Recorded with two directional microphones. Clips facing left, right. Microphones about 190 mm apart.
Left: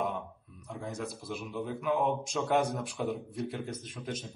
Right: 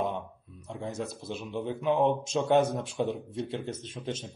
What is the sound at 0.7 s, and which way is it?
Speech, 25° right (ahead or behind).